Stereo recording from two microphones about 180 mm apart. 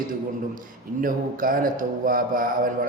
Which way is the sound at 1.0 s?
50° right (ahead or behind).